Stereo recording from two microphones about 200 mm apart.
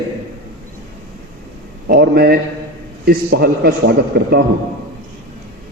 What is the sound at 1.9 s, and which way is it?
A man's voice, 50° right (ahead or behind).